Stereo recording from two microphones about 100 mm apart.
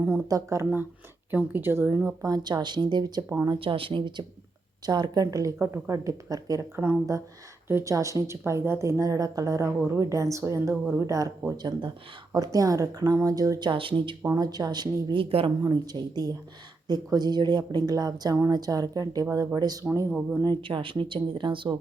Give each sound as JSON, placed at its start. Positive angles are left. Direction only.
{"t": 0.3, "sound": "speech", "side_deg": -35}
{"t": 2.2, "sound": "speech", "side_deg": -45}
{"t": 3.6, "sound": "a woman's voice", "side_deg": -60}
{"t": 5.5, "sound": "a woman's voice", "side_deg": -25}
{"t": 6.7, "sound": "a woman's voice", "side_deg": -20}
{"t": 14.3, "sound": "speech", "side_deg": -45}
{"t": 15.6, "sound": "a woman's voice", "side_deg": -45}
{"t": 20.6, "sound": "speech", "side_deg": -60}